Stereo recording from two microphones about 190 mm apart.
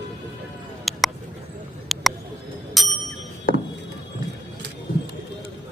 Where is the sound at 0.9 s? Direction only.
Centre (ahead or behind).